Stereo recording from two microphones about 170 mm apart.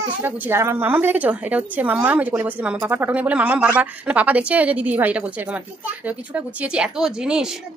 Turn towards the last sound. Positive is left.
turn(degrees=-5)  # may be behind; listen again after turning